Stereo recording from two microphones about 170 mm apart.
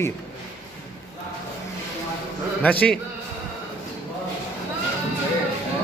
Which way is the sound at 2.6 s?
10° left (ahead or behind).